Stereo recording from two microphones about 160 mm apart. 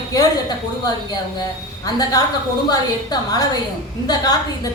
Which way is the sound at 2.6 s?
25° left (ahead or behind).